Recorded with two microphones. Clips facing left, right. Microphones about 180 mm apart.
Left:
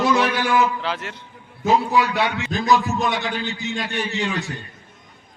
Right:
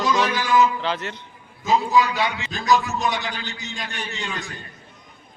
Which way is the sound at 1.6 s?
60° left (ahead or behind).